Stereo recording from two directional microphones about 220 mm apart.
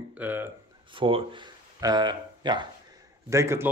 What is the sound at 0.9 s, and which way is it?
Speech, 25° right (ahead or behind).